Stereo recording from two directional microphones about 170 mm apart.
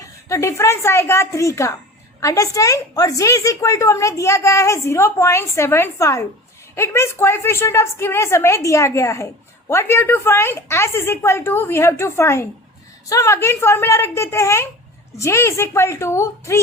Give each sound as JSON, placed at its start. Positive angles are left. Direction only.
{"t": 0.0, "sound": "a woman's voice", "side_deg": 20}